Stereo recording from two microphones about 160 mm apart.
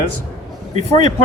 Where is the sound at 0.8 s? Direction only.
35° left (ahead or behind).